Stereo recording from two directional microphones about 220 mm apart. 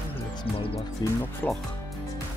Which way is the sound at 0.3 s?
20° left (ahead or behind).